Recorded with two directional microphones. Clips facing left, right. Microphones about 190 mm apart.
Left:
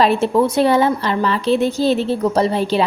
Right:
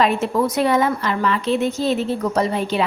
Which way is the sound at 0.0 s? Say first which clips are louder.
Left 4 dB; 30° left (ahead or behind).